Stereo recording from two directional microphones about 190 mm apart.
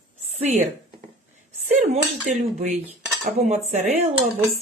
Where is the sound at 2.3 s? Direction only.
40° right (ahead or behind).